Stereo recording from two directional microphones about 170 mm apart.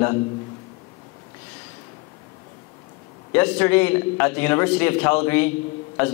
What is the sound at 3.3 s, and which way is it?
A man's voice, 10° left (ahead or behind).